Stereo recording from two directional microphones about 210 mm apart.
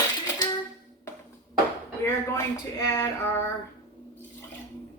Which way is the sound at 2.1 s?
10° left (ahead or behind).